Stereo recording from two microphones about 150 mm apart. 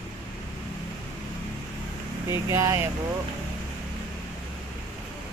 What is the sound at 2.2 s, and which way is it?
Speech, 20° right (ahead or behind).